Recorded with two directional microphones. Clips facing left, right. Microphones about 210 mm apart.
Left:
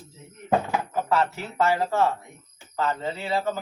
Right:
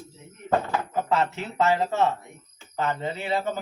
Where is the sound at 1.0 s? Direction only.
20° right (ahead or behind).